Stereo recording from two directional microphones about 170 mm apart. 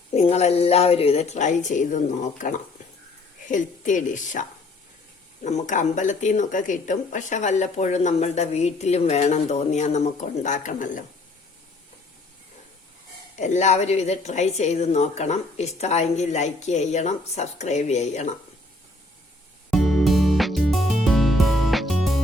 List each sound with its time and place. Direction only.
0.1 s a woman's voice: 40° left (ahead or behind)
13.4 s a woman's voice: 45° left (ahead or behind)
19.7 s music: centre (ahead or behind)